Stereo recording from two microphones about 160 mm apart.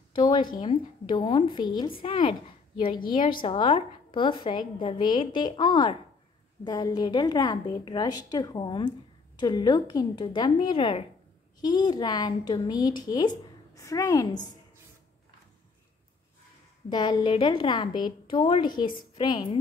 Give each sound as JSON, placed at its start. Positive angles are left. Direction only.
{"t": 0.1, "sound": "a woman's voice", "side_deg": 30}
{"t": 16.9, "sound": "a woman's voice", "side_deg": 25}